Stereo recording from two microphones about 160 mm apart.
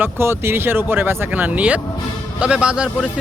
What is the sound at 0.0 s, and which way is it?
Speech, 15° right (ahead or behind).